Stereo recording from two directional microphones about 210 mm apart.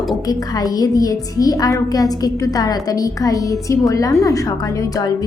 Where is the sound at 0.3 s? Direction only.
15° left (ahead or behind).